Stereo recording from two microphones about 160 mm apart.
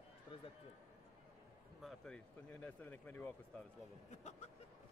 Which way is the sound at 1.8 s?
5° left (ahead or behind).